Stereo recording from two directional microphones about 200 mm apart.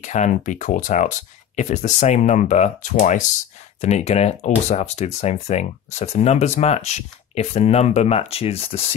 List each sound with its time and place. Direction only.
0.0 s speech: 35° left (ahead or behind)